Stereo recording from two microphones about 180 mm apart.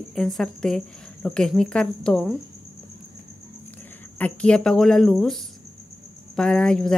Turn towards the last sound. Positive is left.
turn(degrees=5)  # may be behind; listen again after turning